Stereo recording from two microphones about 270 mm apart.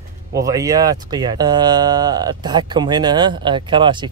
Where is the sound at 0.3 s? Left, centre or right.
Centre.